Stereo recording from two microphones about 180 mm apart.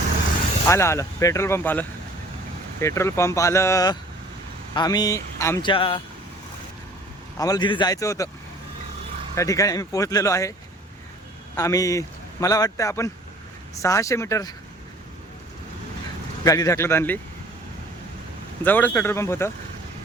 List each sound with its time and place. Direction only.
0.7 s speech: 15° left (ahead or behind)
5.7 s speech: 30° left (ahead or behind)
7.3 s speech: 20° left (ahead or behind)
9.3 s speech: 15° left (ahead or behind)
11.5 s speech: 20° left (ahead or behind)
16.4 s speech: 20° left (ahead or behind)
18.6 s speech: 10° left (ahead or behind)